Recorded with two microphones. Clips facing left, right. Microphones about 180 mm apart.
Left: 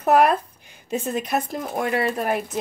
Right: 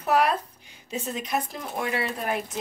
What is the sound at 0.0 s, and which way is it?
Speech, 50° left (ahead or behind).